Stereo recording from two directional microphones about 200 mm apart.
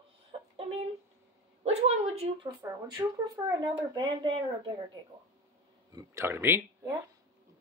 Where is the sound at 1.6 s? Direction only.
30° right (ahead or behind).